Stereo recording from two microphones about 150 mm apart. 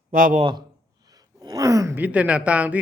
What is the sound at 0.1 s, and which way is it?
Speech, 70° right (ahead or behind).